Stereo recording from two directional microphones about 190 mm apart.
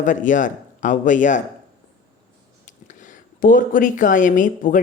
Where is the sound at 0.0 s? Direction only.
40° left (ahead or behind).